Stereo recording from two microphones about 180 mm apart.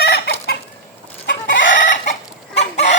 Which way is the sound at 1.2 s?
80° left.